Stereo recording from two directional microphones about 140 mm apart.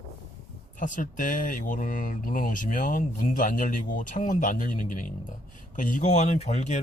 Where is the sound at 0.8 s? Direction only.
70° left (ahead or behind).